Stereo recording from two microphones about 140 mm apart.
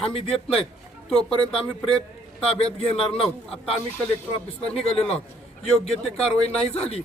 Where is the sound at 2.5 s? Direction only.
45° left (ahead or behind).